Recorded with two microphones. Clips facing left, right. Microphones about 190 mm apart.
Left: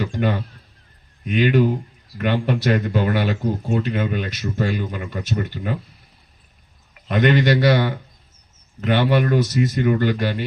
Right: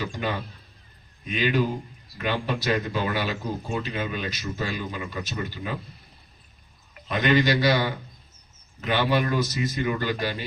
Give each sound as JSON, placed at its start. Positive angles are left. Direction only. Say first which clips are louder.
{"t": 0.0, "sound": "a sound", "louder": "left 7 dB", "side_deg": 60}
{"t": 1.4, "sound": "speech", "louder": "left 7 dB", "side_deg": 60}
{"t": 7.1, "sound": "speech", "louder": "left 4 dB", "side_deg": 65}
{"t": 8.9, "sound": "speech", "louder": "left 5 dB", "side_deg": 60}